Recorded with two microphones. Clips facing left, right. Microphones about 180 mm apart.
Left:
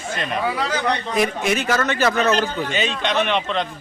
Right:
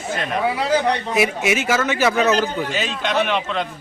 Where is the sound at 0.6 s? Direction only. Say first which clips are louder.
Right 4 dB; 30° right (ahead or behind).